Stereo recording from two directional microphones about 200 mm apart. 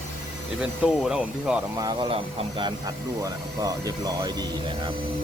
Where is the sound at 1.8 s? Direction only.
20° right (ahead or behind).